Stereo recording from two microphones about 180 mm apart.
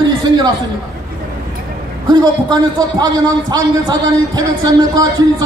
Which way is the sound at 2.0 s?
20° right (ahead or behind).